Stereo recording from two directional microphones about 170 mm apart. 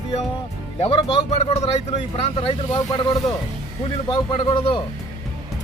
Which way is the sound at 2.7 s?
20° left (ahead or behind).